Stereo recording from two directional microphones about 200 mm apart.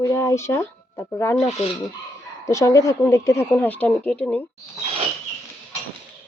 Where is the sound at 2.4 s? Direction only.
15° left (ahead or behind).